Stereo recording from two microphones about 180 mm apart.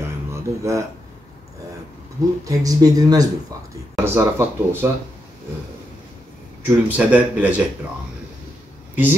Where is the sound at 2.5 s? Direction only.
20° right (ahead or behind).